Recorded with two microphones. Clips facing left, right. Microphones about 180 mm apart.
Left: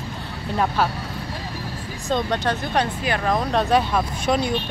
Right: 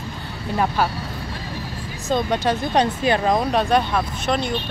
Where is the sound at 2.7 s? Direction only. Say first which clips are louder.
Right 4 dB; 25° right (ahead or behind).